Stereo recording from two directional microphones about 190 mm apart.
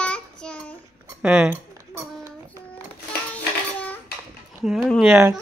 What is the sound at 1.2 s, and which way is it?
Speech, 5° right (ahead or behind).